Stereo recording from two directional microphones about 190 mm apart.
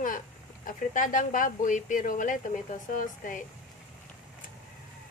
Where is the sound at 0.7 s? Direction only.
45° left (ahead or behind).